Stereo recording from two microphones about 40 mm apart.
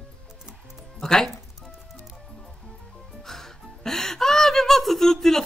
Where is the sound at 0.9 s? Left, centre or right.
Centre.